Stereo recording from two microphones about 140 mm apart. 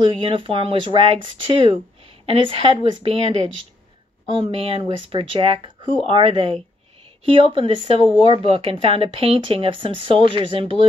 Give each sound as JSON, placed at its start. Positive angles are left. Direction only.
{"t": 0.0, "sound": "a woman's voice", "side_deg": -40}